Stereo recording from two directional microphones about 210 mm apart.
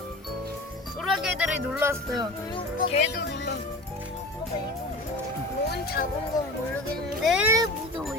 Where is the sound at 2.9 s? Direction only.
35° left (ahead or behind).